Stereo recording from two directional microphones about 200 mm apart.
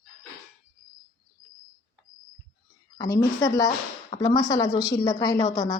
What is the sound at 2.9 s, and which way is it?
A woman's voice, 20° left (ahead or behind).